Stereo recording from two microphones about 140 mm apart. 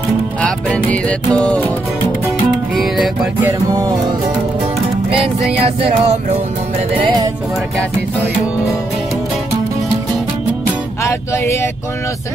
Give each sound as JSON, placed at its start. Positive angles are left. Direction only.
{"t": 0.4, "sound": "music", "side_deg": 10}
{"t": 5.6, "sound": "music", "side_deg": -45}
{"t": 7.0, "sound": "speech", "side_deg": -35}
{"t": 11.1, "sound": "music", "side_deg": 20}